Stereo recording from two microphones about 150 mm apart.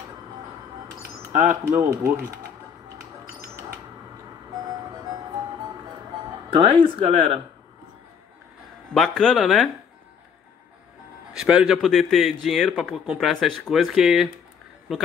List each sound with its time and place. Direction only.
1.3 s speech: 60° right (ahead or behind)
1.7 s speech: 20° right (ahead or behind)
6.5 s speech: 35° right (ahead or behind)
8.9 s a man's voice: centre (ahead or behind)
11.3 s a man's voice: 5° right (ahead or behind)